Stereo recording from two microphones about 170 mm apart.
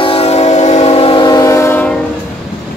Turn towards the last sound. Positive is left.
turn(degrees=15)  # may be behind; listen again after turning